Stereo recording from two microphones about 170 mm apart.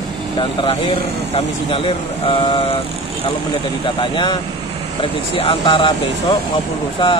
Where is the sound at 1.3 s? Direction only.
30° left (ahead or behind).